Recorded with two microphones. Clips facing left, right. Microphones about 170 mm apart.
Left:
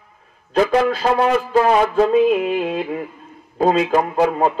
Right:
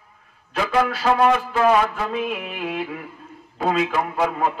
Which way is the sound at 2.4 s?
35° left (ahead or behind).